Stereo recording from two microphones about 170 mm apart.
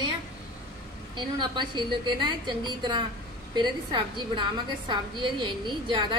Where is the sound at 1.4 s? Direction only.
25° right (ahead or behind).